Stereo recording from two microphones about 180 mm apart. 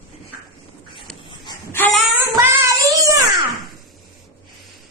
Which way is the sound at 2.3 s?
15° right (ahead or behind).